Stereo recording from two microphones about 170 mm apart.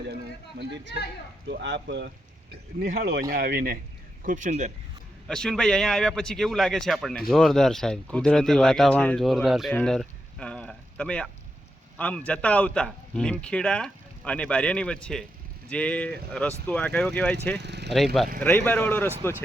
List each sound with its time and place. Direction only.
0.6 s speech: 90° right
3.0 s speech: 65° right (ahead or behind)
4.2 s speech: 50° right (ahead or behind)
5.3 s a man's voice: 5° left (ahead or behind)
9.7 s a sound: 5° left (ahead or behind)
11.9 s a man's voice: 10° left (ahead or behind)
17.6 s speech: 90° right
17.9 s a man's voice: centre (ahead or behind)